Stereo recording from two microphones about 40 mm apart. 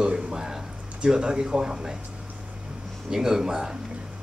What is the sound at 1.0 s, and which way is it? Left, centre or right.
Speech, centre.